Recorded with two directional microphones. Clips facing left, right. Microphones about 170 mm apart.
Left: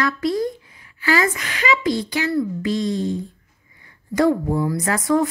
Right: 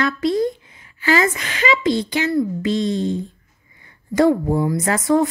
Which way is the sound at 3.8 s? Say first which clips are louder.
Right 2 dB; 25° right (ahead or behind).